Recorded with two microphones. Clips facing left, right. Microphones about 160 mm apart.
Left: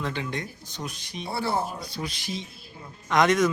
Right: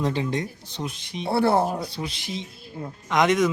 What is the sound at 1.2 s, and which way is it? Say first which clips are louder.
Speech: right 7 dB; 65° right (ahead or behind).